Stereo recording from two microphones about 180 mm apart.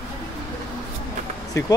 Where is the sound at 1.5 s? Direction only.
20° left (ahead or behind).